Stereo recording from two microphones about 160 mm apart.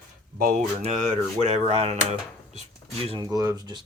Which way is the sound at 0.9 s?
50° right (ahead or behind).